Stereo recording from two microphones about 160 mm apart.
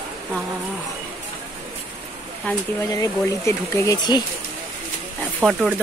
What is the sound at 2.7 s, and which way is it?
Speech, 20° left (ahead or behind).